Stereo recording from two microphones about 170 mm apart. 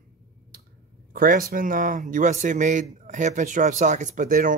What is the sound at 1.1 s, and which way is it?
Speech, 55° right (ahead or behind).